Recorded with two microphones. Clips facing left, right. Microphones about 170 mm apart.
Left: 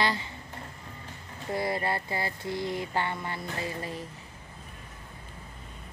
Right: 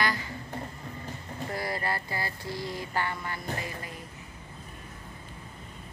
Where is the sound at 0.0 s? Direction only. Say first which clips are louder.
Left 1 dB; 25° left (ahead or behind).